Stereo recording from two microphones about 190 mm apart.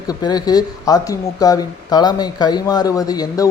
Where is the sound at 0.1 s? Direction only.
20° left (ahead or behind).